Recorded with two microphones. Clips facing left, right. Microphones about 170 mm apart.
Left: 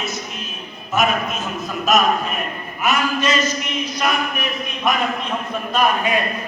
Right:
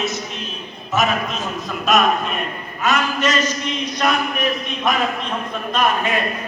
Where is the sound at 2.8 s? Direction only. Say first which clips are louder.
Even; 10° left (ahead or behind).